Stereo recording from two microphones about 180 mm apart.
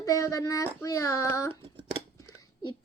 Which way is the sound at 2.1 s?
20° left (ahead or behind).